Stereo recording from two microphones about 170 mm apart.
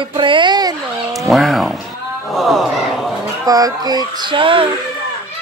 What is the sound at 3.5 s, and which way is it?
A woman's voice, 20° right (ahead or behind).